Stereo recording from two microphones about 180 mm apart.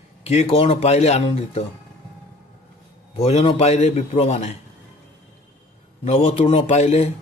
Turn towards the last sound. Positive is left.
turn(degrees=40)  # may be behind; listen again after turning